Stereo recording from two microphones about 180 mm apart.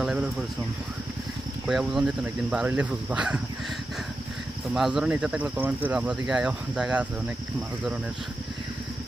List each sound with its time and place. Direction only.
0.0 s a sound: 5° right (ahead or behind)
1.7 s speech: centre (ahead or behind)
4.7 s speech: 5° right (ahead or behind)